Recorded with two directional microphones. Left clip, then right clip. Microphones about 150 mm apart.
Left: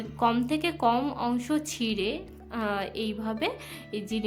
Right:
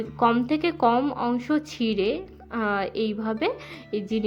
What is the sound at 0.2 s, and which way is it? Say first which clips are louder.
A woman's voice: right 4 dB; 25° right (ahead or behind).